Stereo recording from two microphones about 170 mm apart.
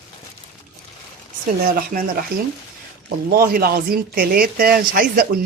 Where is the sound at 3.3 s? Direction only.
60° right (ahead or behind).